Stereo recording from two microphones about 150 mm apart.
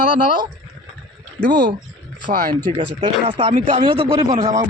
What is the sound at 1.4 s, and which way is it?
Speech, 30° left (ahead or behind).